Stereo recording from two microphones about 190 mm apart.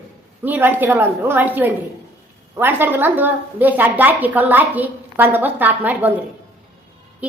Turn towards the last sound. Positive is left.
turn(degrees=-5)  # may be behind; listen again after turning